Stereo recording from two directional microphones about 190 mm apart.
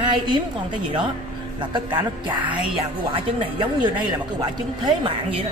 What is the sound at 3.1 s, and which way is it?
Speech, 25° right (ahead or behind).